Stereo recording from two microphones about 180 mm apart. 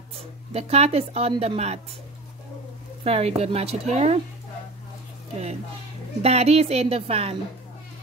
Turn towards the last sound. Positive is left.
turn(degrees=-35)  # may be behind; listen again after turning